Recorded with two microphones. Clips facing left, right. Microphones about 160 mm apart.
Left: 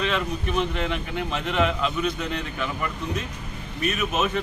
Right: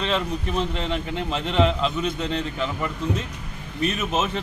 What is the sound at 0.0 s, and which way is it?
Speech, 30° right (ahead or behind).